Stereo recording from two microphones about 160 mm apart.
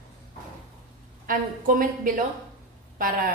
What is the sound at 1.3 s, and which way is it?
A woman's voice, 60° right (ahead or behind).